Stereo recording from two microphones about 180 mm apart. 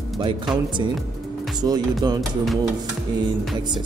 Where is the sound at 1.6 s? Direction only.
20° right (ahead or behind).